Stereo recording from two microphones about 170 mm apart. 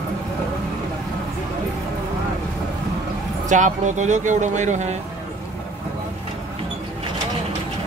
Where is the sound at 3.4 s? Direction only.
45° right (ahead or behind).